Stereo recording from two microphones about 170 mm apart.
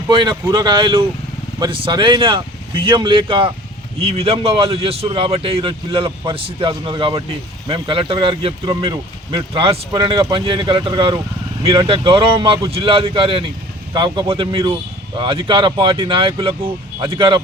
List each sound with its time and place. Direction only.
0.1 s speech: 30° right (ahead or behind)